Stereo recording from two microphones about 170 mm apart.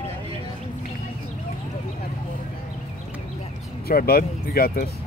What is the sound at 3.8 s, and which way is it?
Speech, 65° left (ahead or behind).